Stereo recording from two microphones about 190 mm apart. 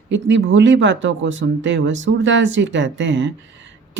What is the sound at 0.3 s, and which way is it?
Speech, 70° right (ahead or behind).